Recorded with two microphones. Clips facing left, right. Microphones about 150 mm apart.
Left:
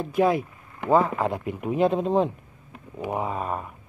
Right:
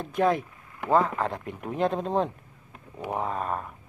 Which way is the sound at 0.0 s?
5° left (ahead or behind).